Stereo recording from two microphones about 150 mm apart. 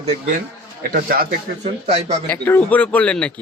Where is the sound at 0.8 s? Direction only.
70° right (ahead or behind).